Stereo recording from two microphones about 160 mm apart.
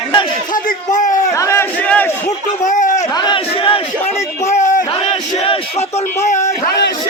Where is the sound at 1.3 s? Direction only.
20° left (ahead or behind).